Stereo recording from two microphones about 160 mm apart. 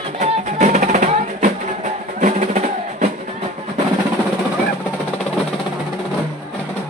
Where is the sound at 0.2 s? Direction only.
45° right (ahead or behind).